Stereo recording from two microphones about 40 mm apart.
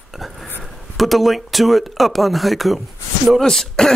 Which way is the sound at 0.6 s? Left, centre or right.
Centre.